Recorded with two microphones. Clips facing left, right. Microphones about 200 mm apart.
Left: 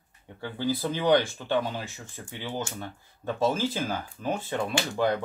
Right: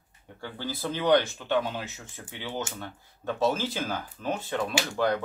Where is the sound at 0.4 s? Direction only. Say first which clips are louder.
Left 5 dB; 10° left (ahead or behind).